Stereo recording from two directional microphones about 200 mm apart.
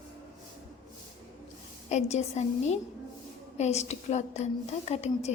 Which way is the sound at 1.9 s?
35° left (ahead or behind).